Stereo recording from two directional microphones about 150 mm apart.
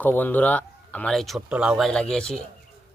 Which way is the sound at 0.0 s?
10° left (ahead or behind).